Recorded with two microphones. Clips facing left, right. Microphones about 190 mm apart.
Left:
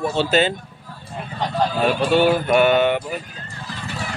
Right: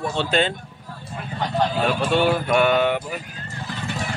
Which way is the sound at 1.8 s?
Centre (ahead or behind).